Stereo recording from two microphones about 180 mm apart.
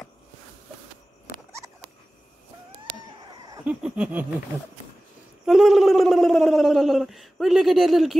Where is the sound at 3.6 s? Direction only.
5° right (ahead or behind).